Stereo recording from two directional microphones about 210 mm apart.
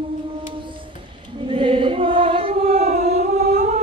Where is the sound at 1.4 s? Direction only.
25° right (ahead or behind).